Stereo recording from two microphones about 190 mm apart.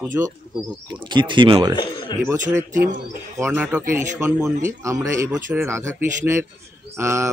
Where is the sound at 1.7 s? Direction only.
25° left (ahead or behind).